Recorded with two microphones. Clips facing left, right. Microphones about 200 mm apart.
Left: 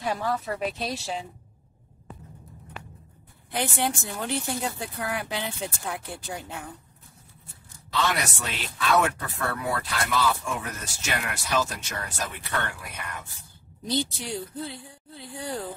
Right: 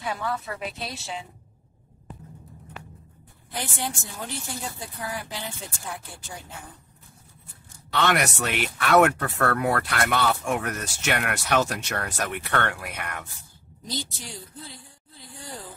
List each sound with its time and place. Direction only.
0.0 s a woman's voice: 35° left (ahead or behind)
3.5 s speech: 65° left (ahead or behind)
8.0 s speech: 70° right (ahead or behind)
13.9 s speech: 60° left (ahead or behind)